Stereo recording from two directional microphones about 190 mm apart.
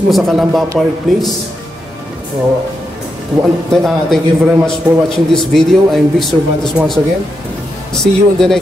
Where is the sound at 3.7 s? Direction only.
Centre (ahead or behind).